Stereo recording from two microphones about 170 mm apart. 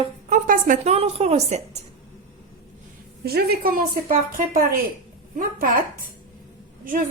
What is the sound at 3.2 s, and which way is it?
Speech, 65° right (ahead or behind).